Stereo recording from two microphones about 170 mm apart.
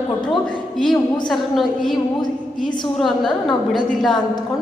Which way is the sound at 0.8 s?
Centre (ahead or behind).